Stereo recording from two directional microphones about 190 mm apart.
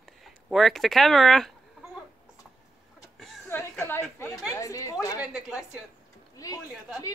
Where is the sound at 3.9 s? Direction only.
15° left (ahead or behind).